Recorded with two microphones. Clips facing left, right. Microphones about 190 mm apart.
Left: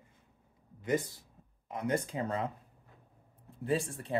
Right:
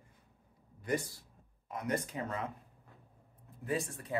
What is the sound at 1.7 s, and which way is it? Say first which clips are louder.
Speech: left 3 dB; 30° left (ahead or behind).